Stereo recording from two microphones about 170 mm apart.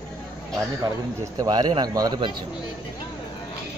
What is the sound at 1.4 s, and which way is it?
Speech, 25° right (ahead or behind).